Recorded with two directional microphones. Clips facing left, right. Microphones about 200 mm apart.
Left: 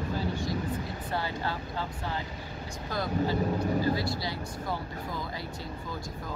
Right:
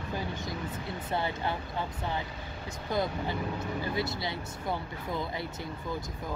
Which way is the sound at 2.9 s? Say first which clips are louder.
Left 2 dB; 20° right (ahead or behind).